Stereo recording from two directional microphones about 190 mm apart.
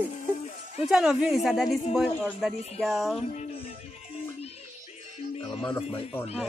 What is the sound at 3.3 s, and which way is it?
Music, 35° left (ahead or behind).